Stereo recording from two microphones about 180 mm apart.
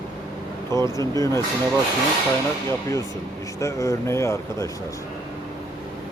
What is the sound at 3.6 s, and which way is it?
Speech, 15° left (ahead or behind).